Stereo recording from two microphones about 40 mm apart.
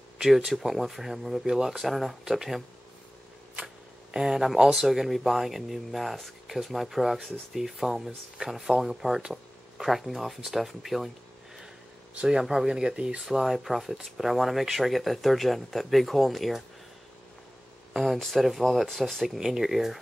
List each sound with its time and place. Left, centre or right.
0.2 s speech: centre
3.6 s a sound: centre
4.7 s speech: centre
12.3 s speech: centre
13.2 s speech: centre
17.9 s speech: centre
19.2 s speech: centre